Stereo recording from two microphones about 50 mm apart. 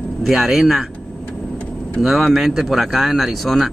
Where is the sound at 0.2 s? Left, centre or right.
Centre.